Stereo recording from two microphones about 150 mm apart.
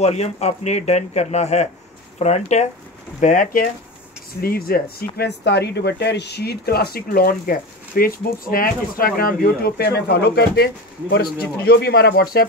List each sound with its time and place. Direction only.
0.0 s speech: 45° left (ahead or behind)
3.2 s speech: 60° left (ahead or behind)
4.4 s speech: 85° left